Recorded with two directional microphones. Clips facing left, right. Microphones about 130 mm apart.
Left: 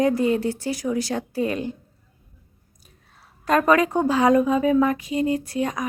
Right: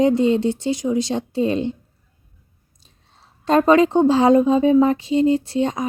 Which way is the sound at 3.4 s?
25° right (ahead or behind).